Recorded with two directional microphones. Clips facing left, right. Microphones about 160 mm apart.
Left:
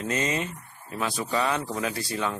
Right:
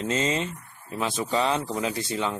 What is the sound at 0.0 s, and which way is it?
Speech, 25° right (ahead or behind).